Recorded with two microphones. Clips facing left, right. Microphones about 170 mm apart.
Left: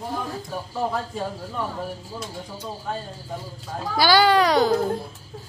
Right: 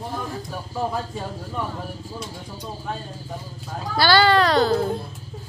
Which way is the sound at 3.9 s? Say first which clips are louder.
Even; 10° left (ahead or behind).